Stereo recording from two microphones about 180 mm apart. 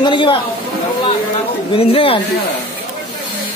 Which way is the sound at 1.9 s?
30° left (ahead or behind).